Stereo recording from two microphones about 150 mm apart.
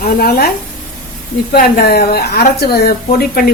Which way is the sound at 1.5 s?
85° left.